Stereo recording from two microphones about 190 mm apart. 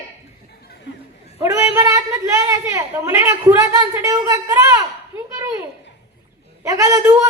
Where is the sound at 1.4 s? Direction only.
15° right (ahead or behind).